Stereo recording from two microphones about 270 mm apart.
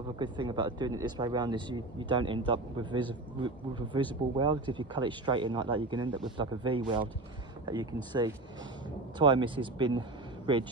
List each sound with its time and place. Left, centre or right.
0.2 s speech: centre